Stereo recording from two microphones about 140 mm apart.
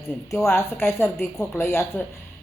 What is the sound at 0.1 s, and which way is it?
Speech, 20° left (ahead or behind).